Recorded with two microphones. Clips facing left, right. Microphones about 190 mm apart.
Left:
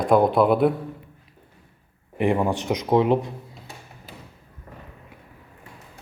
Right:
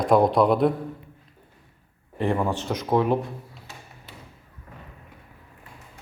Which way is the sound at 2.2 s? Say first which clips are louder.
Left 3 dB; 15° left (ahead or behind).